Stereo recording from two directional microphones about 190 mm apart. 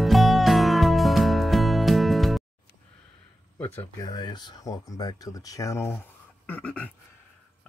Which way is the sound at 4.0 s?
20° left (ahead or behind).